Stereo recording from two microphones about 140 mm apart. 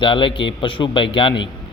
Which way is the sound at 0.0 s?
35° left (ahead or behind).